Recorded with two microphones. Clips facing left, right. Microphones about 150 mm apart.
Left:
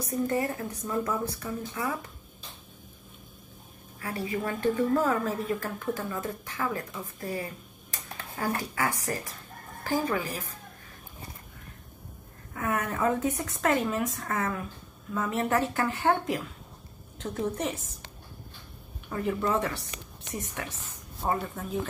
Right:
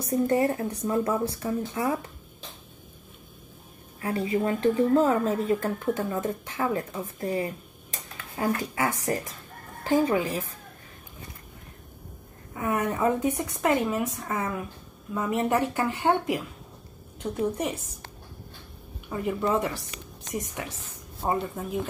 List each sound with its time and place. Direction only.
0.1 s a woman's voice: 30° right (ahead or behind)
4.0 s a woman's voice: 30° right (ahead or behind)
12.5 s a woman's voice: 15° right (ahead or behind)
19.0 s a woman's voice: 10° right (ahead or behind)